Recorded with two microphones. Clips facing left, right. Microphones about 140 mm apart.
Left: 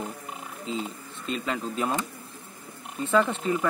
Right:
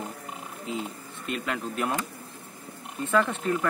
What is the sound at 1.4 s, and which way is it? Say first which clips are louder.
Speech: left 1 dB; 5° right (ahead or behind).